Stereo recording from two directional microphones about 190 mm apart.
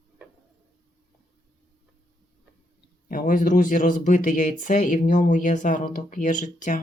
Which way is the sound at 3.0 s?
45° left (ahead or behind).